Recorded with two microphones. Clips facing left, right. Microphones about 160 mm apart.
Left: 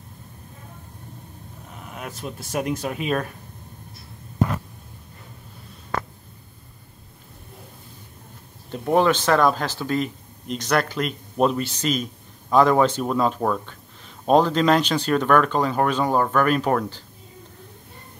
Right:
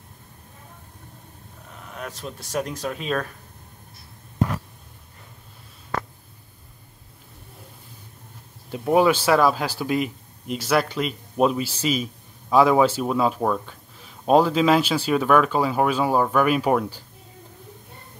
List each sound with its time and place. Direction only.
1.8 s speech: 10° left (ahead or behind)
8.6 s speech: 5° right (ahead or behind)